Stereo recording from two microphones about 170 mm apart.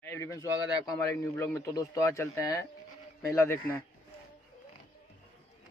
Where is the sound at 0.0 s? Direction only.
15° left (ahead or behind).